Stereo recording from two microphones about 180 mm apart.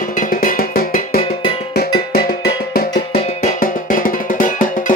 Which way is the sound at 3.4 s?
50° left (ahead or behind).